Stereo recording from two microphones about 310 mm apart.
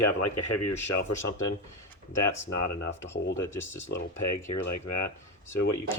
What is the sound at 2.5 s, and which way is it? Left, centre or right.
Speech, left.